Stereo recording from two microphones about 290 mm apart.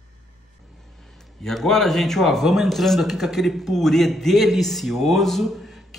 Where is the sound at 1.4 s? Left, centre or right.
Centre.